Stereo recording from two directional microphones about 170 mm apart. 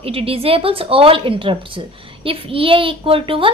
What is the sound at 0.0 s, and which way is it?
A woman's voice, 35° right (ahead or behind).